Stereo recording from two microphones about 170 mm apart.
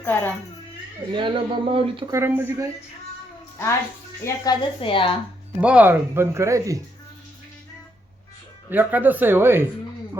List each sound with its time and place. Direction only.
0.0 s speech: 10° left (ahead or behind)
1.1 s speech: 30° right (ahead or behind)
2.1 s speech: 15° right (ahead or behind)
4.4 s a woman's voice: 30° left (ahead or behind)
5.5 s speech: 10° right (ahead or behind)
8.7 s speech: 10° right (ahead or behind)